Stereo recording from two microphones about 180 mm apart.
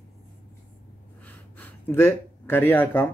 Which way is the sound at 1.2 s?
10° left (ahead or behind).